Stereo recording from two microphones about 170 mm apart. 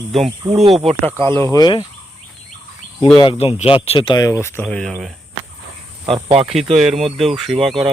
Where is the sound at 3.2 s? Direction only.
30° left (ahead or behind); by 4.6 s 15° left (ahead or behind).